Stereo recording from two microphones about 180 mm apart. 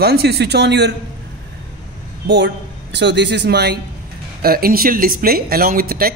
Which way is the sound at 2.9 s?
75° right (ahead or behind).